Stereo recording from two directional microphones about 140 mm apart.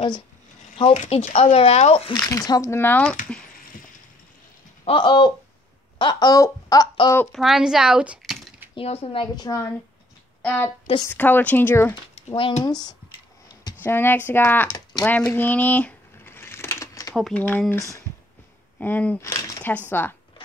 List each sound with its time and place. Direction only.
0.9 s speech: 55° left (ahead or behind)
2.1 s speech: 25° left (ahead or behind)
4.8 s a woman's voice: 35° left (ahead or behind)
5.9 s a sound: 30° left (ahead or behind)
7.3 s speech: 5° right (ahead or behind)
8.7 s a woman's voice: 45° left (ahead or behind); by 11.9 s 15° left (ahead or behind)
12.2 s a sound: 50° left (ahead or behind)
12.6 s speech: 30° left (ahead or behind)
13.8 s speech: 15° left (ahead or behind)
15.0 s a sound: 10° left (ahead or behind)
17.1 s speech: centre (ahead or behind)
17.4 s speech: 10° left (ahead or behind)